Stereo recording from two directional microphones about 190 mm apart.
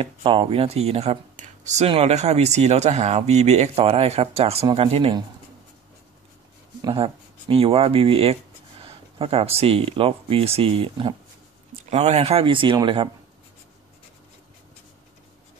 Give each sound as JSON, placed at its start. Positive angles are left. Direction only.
{"t": 0.0, "sound": "speech", "side_deg": -30}
{"t": 6.8, "sound": "speech", "side_deg": -25}